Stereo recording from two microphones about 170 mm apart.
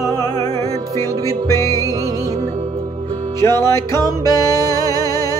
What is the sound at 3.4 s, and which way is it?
Music, 15° left (ahead or behind).